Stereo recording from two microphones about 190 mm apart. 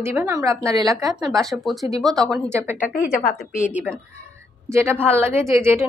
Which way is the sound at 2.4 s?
15° right (ahead or behind).